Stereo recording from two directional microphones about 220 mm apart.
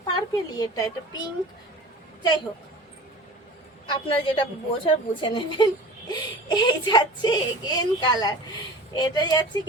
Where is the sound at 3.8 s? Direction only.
20° left (ahead or behind).